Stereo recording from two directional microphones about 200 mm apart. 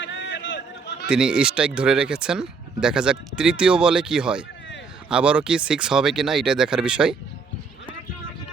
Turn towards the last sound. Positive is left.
turn(degrees=-5)  # may be behind; listen again after turning